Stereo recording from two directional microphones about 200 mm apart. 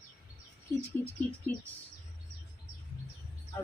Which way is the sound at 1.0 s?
10° left (ahead or behind).